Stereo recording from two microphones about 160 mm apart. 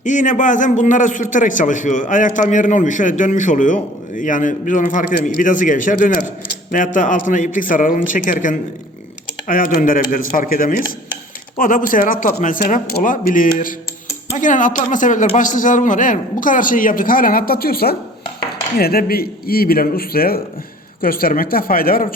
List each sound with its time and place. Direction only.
0.0 s a man's voice: 55° left (ahead or behind)